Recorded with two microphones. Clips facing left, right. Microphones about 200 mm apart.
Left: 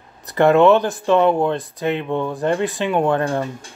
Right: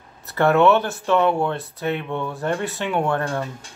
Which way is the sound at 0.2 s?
15° left (ahead or behind).